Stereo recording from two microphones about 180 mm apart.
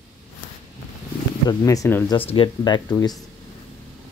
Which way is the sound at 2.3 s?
25° left (ahead or behind).